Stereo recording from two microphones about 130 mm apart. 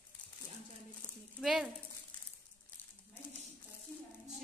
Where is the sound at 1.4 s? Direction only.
5° right (ahead or behind).